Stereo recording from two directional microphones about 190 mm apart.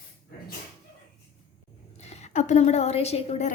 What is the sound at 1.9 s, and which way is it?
A woman's voice, 35° left (ahead or behind).